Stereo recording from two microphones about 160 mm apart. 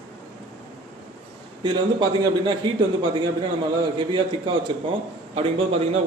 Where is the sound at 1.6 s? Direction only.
30° right (ahead or behind).